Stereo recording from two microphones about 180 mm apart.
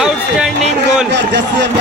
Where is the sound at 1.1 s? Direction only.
75° right (ahead or behind).